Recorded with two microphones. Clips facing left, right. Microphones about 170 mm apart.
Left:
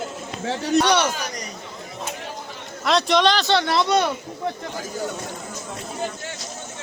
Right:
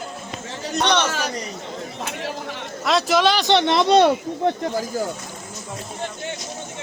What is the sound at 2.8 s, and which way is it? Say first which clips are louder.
Speech: even; 5° right (ahead or behind).